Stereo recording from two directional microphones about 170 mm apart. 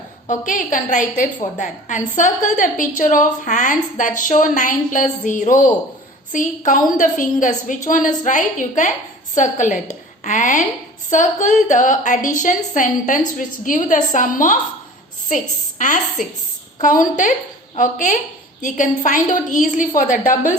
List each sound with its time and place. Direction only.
0.3 s a woman's voice: 50° left (ahead or behind)
15.8 s a woman's voice: 50° left (ahead or behind)